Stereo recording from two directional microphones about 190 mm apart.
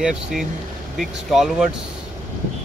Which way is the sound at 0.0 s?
Centre (ahead or behind).